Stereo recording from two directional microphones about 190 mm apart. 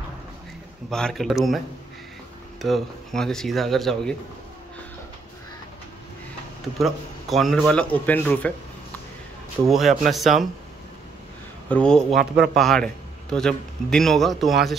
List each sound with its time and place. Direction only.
0.8 s a man's voice: centre (ahead or behind)
2.6 s a man's voice: centre (ahead or behind)
6.8 s a man's voice: centre (ahead or behind)
9.7 s a man's voice: centre (ahead or behind)
11.7 s a man's voice: 5° left (ahead or behind)